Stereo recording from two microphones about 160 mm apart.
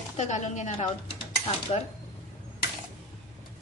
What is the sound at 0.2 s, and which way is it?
Speech, 45° left (ahead or behind).